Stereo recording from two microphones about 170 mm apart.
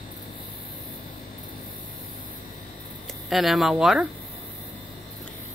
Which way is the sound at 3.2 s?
Centre (ahead or behind).